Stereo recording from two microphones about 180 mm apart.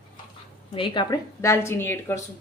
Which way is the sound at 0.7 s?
30° left (ahead or behind).